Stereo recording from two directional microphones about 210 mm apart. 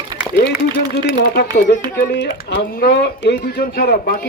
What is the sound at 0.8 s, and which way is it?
Speech, 45° left (ahead or behind).